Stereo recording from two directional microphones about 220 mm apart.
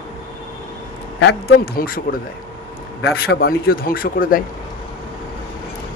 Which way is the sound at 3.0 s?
45° left (ahead or behind).